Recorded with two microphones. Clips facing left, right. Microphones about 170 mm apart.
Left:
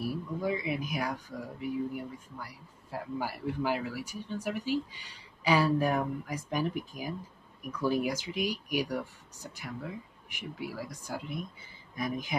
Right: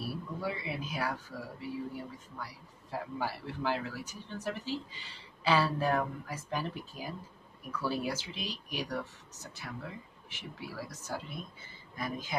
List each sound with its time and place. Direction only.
0.0 s speech: 15° left (ahead or behind)